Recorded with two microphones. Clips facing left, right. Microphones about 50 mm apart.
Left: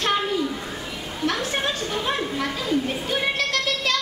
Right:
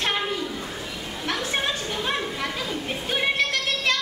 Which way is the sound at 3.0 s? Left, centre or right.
Right.